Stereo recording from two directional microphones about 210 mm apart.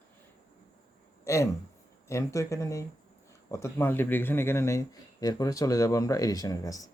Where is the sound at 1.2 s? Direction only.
15° left (ahead or behind).